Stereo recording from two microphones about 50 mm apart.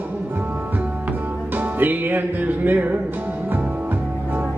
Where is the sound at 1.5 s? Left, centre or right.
Right.